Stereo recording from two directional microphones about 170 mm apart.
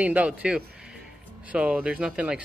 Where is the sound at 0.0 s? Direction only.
10° right (ahead or behind).